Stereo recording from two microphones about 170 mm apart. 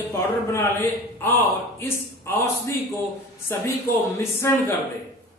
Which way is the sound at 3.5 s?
15° left (ahead or behind).